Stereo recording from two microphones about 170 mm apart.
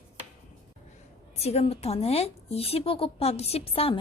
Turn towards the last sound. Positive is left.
turn(degrees=35)  # may be behind; listen again after turning